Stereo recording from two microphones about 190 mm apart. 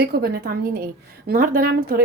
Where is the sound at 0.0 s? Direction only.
55° right (ahead or behind).